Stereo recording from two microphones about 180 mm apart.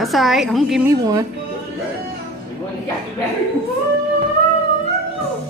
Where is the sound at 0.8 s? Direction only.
20° right (ahead or behind).